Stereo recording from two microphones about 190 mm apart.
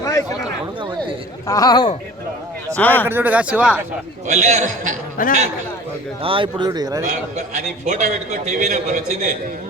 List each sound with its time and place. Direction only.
0.0 s a sound: 20° left (ahead or behind)
1.5 s speech: 20° left (ahead or behind)
2.7 s speech: 10° left (ahead or behind)
3.1 s speech: 10° right (ahead or behind)
4.3 s a man's voice: 40° right (ahead or behind)
5.2 s speech: 45° left (ahead or behind)
6.2 s speech: 25° right (ahead or behind)
7.3 s a man's voice: 40° right (ahead or behind)